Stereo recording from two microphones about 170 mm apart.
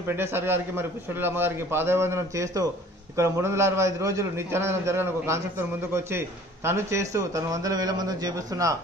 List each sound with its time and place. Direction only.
0.1 s a man's voice: 15° right (ahead or behind)